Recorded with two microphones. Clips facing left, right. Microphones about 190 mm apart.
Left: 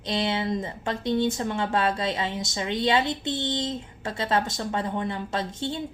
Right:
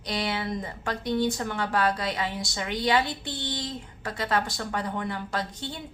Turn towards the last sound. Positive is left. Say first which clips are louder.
# left 4 dB
turn(degrees=25)  # may be behind; listen again after turning